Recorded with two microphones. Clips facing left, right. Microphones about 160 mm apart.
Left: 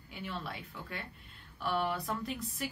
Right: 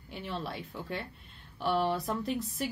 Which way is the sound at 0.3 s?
30° right (ahead or behind).